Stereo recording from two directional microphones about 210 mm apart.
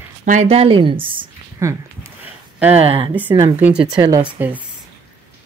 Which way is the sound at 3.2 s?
10° right (ahead or behind).